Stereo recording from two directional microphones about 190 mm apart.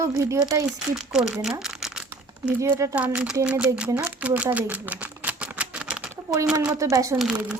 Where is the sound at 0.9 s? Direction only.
5° right (ahead or behind).